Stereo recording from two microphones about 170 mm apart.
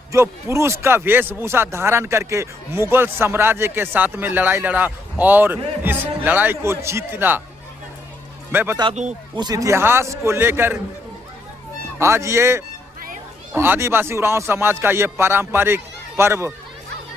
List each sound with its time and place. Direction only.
0.1 s speech: 15° right (ahead or behind)
8.5 s speech: 10° right (ahead or behind)
9.3 s speech: 25° right (ahead or behind)
11.9 s speech: 15° right (ahead or behind)